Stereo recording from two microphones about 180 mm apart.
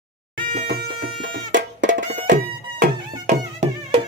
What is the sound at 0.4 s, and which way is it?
Music, 65° right (ahead or behind).